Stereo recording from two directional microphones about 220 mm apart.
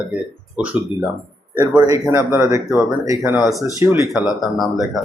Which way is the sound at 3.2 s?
Centre (ahead or behind).